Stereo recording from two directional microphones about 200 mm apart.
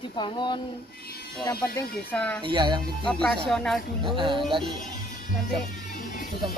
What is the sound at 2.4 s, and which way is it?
Music, 20° right (ahead or behind).